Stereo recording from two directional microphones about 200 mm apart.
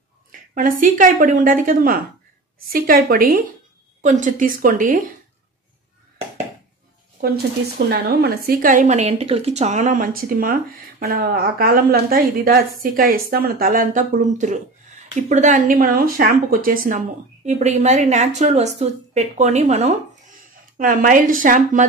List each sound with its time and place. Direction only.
0.3 s a woman's voice: 45° right (ahead or behind)
7.9 s a woman's voice: 50° right (ahead or behind)